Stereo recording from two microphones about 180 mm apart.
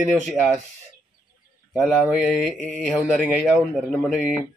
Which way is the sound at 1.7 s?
Centre (ahead or behind).